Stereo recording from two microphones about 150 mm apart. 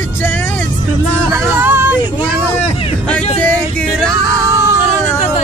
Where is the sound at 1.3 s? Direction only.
15° right (ahead or behind).